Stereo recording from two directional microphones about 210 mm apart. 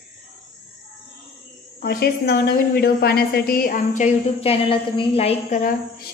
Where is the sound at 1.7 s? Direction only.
50° left (ahead or behind).